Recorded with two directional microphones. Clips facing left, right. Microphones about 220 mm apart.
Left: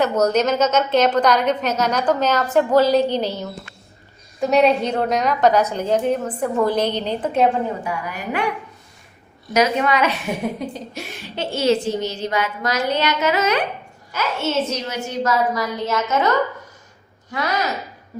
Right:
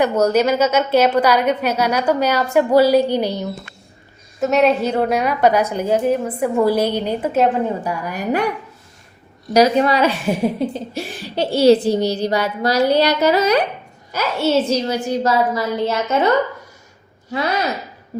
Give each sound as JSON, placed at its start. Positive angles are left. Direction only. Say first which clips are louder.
{"t": 0.0, "sound": "a woman's voice", "louder": "right 2 dB", "side_deg": -10}
{"t": 4.4, "sound": "a woman's voice", "louder": "right 1 dB", "side_deg": 0}
{"t": 7.9, "sound": "a woman's voice", "louder": "right 5 dB", "side_deg": -40}
{"t": 9.5, "sound": "a woman's voice", "louder": "right 4 dB", "side_deg": -35}